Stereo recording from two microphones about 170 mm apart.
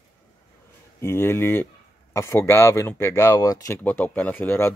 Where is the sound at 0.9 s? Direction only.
15° left (ahead or behind).